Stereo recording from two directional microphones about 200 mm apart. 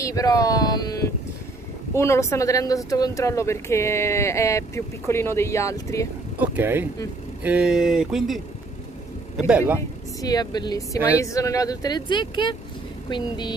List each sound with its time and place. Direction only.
0.0 s speech: 15° left (ahead or behind)
6.3 s speech: 5° right (ahead or behind)
10.2 s speech: 20° left (ahead or behind)